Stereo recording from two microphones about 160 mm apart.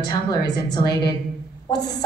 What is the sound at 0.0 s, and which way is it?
Speech, 25° left (ahead or behind).